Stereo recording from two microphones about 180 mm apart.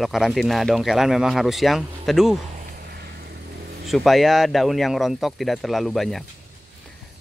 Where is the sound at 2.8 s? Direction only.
60° right (ahead or behind).